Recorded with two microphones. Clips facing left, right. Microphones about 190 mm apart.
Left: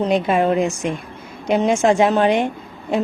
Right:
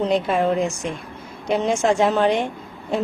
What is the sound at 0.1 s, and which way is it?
A woman's voice, 10° left (ahead or behind).